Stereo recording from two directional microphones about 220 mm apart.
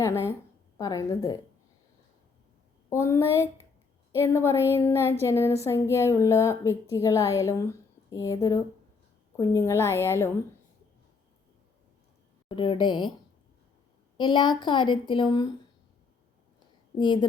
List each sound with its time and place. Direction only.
0.0 s a woman's voice: 10° left (ahead or behind)
2.9 s a woman's voice: 10° left (ahead or behind)
12.5 s a woman's voice: 20° left (ahead or behind)
14.2 s a woman's voice: 20° left (ahead or behind)
17.0 s a woman's voice: 20° left (ahead or behind)